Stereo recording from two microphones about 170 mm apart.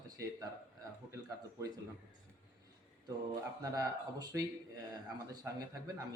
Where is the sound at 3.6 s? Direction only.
20° right (ahead or behind).